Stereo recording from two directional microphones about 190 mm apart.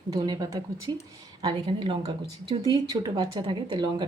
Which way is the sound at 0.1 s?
20° right (ahead or behind).